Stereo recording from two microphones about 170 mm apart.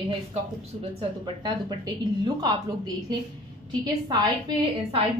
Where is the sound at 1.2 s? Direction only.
25° right (ahead or behind).